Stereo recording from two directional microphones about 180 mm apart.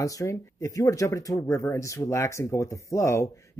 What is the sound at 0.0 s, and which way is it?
Speech, 15° left (ahead or behind).